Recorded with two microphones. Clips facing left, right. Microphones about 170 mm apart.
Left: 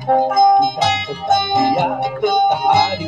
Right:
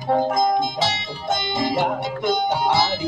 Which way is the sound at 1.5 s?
20° left (ahead or behind).